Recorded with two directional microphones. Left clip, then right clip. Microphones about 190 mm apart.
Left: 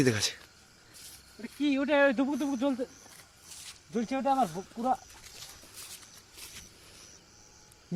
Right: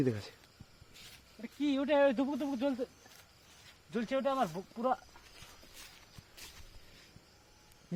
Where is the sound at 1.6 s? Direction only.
45° right (ahead or behind).